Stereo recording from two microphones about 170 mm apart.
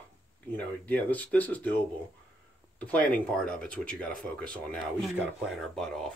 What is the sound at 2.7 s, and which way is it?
Speech, 10° left (ahead or behind).